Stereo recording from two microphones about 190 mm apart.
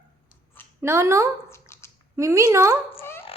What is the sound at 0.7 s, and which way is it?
Speech, 15° right (ahead or behind).